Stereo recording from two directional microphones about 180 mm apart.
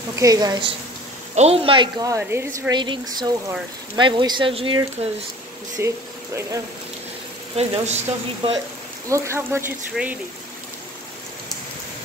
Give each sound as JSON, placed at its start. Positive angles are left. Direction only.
{"t": 0.1, "sound": "speech", "side_deg": -20}
{"t": 1.3, "sound": "speech", "side_deg": -35}
{"t": 2.7, "sound": "speech", "side_deg": -25}
{"t": 5.8, "sound": "speech", "side_deg": -15}
{"t": 7.5, "sound": "speech", "side_deg": -35}
{"t": 9.1, "sound": "speech", "side_deg": -15}